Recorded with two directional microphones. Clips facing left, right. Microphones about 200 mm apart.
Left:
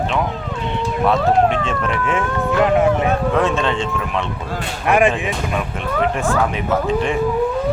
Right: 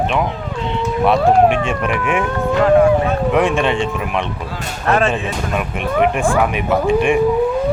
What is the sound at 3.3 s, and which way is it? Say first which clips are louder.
Speech: right 2 dB; 15° right (ahead or behind).